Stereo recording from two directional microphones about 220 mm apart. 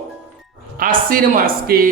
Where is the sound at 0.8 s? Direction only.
40° right (ahead or behind).